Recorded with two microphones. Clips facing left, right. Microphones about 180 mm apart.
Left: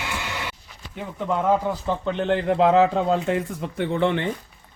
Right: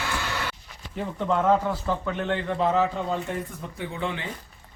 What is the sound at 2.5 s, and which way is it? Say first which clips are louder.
Speech: left 7 dB; 85° left.